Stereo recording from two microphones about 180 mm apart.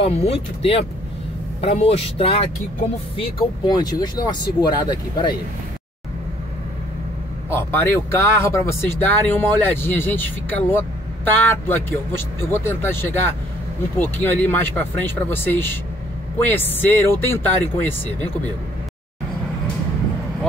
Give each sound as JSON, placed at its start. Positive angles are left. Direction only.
{"t": 0.0, "sound": "speech", "side_deg": 35}
{"t": 7.4, "sound": "speech", "side_deg": 15}